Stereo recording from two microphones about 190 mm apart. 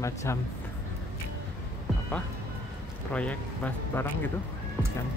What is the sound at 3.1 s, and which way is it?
Speech, 5° left (ahead or behind).